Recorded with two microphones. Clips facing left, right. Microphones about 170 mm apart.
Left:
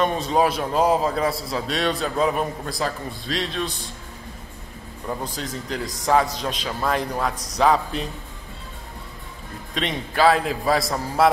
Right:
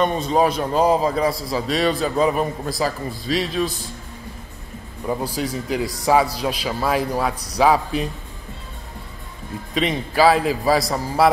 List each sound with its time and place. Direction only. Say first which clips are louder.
0.0 s a man's voice: right 2 dB; centre (ahead or behind)
5.0 s a man's voice: right 6 dB; 10° right (ahead or behind)
9.8 s a man's voice: right 4 dB; 5° right (ahead or behind)